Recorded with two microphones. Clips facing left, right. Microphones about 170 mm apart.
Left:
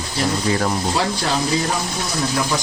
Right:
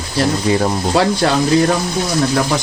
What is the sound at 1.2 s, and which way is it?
Speech, 55° right (ahead or behind).